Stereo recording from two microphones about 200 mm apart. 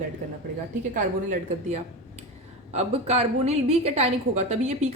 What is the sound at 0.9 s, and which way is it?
A woman's voice, 40° right (ahead or behind).